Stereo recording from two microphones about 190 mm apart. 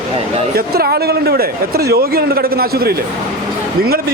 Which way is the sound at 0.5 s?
55° right (ahead or behind).